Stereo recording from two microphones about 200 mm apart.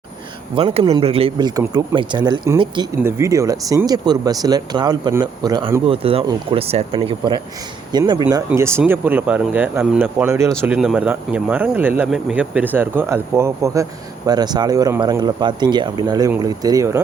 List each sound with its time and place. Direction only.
0.5 s speech: 30° right (ahead or behind)